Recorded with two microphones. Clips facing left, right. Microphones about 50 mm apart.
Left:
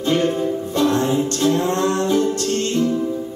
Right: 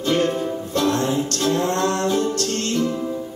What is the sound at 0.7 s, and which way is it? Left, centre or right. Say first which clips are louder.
Music: left 2 dB; centre.